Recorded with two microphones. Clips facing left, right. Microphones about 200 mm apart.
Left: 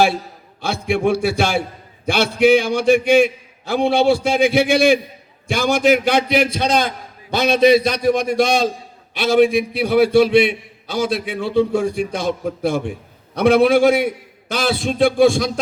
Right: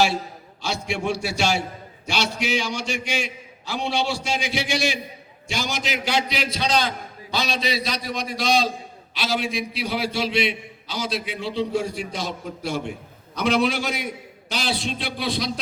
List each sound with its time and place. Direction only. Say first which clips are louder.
0.6 s a man's voice: left 8 dB; 55° left (ahead or behind)